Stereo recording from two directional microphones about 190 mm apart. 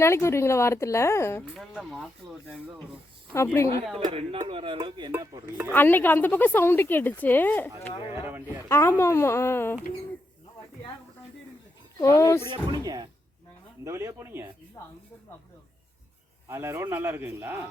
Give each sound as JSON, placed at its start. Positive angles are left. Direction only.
{"t": 0.0, "sound": "a woman's voice", "side_deg": 15}
{"t": 1.5, "sound": "speech", "side_deg": 0}
{"t": 3.3, "sound": "a woman's voice", "side_deg": 15}
{"t": 3.9, "sound": "a sound", "side_deg": -30}
{"t": 5.7, "sound": "a woman's voice", "side_deg": 10}
{"t": 8.1, "sound": "speech", "side_deg": -10}
{"t": 8.7, "sound": "a woman's voice", "side_deg": 15}
{"t": 11.9, "sound": "a woman's voice", "side_deg": 15}
{"t": 12.8, "sound": "a sound", "side_deg": -20}
{"t": 13.8, "sound": "speech", "side_deg": -15}
{"t": 14.8, "sound": "a woman's voice", "side_deg": 15}
{"t": 16.5, "sound": "speech", "side_deg": -15}